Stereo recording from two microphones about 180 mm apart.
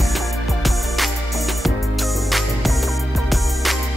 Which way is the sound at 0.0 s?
Centre (ahead or behind).